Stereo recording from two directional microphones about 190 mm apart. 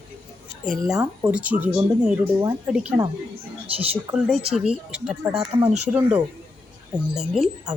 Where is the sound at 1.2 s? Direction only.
5° right (ahead or behind).